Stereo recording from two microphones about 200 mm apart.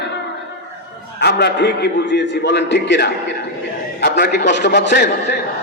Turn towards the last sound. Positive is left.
turn(degrees=55)  # may be behind; listen again after turning